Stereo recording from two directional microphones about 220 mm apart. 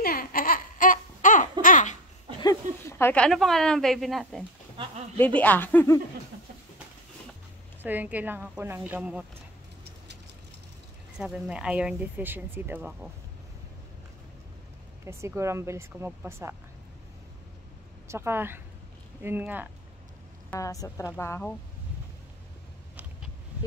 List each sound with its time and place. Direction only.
0.0 s a sound: 40° left (ahead or behind)
1.6 s laughter: 35° left (ahead or behind)
2.4 s speech: 10° left (ahead or behind)
7.8 s speech: 10° right (ahead or behind)
11.1 s speech: 5° right (ahead or behind)
15.0 s speech: 10° right (ahead or behind)
18.0 s speech: 10° right (ahead or behind)
20.4 s speech: 15° left (ahead or behind)